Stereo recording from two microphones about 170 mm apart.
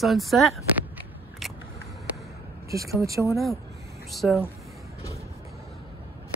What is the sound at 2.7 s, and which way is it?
Speech, 20° right (ahead or behind).